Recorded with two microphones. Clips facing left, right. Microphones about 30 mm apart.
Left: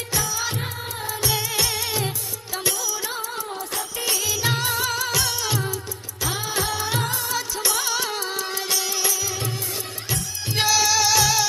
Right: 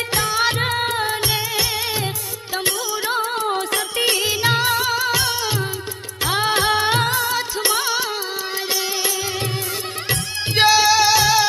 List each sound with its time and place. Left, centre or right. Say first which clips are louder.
0.1 s music: right 6 dB; right
1.5 s music: right 3 dB; right
2.6 s music: right 4 dB; right
3.4 s music: right 9 dB; right
4.0 s music: right 5 dB; right
4.4 s music: right 6 dB; right
6.2 s music of bollywood: right 8 dB; right
10.1 s music: right 5 dB; right
10.7 s music: right 5 dB; right